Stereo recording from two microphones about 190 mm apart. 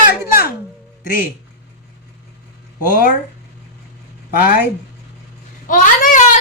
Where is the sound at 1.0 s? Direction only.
45° left (ahead or behind).